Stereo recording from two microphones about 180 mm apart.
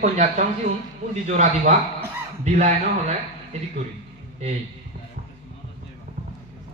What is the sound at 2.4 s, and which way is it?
Speech, 40° right (ahead or behind).